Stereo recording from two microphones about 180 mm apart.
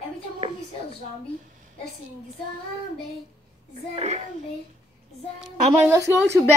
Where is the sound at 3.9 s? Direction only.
35° right (ahead or behind).